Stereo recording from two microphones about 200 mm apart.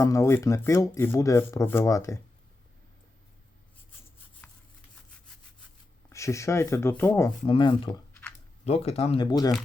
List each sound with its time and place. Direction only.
0.0 s speech: 15° left (ahead or behind)
4.4 s a sound: 5° left (ahead or behind)
6.1 s speech: 15° left (ahead or behind)
7.3 s speech: 25° left (ahead or behind)